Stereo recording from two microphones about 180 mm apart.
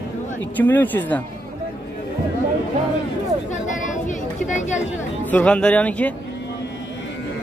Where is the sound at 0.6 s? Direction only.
10° left (ahead or behind).